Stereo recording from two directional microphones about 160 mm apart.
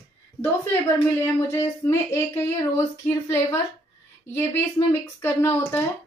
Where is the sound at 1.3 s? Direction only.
15° left (ahead or behind).